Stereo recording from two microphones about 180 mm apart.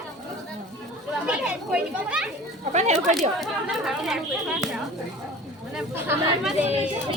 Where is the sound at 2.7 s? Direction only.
40° right (ahead or behind).